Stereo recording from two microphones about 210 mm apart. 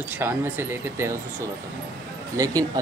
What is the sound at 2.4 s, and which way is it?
Speech, 15° right (ahead or behind).